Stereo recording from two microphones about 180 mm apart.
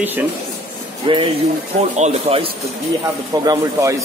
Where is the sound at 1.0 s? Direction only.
30° right (ahead or behind).